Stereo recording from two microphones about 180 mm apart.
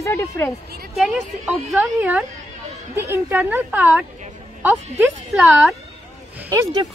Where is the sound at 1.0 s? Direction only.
Centre (ahead or behind).